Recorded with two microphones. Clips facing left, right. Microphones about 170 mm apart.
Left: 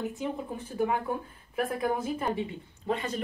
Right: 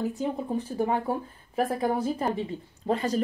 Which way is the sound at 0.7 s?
35° right (ahead or behind).